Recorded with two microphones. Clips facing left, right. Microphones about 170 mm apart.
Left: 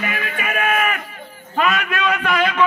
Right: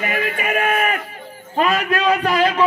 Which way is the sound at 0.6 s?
30° right (ahead or behind).